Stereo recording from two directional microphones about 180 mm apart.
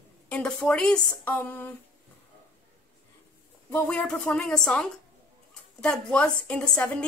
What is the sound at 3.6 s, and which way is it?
A woman's voice, 5° left (ahead or behind).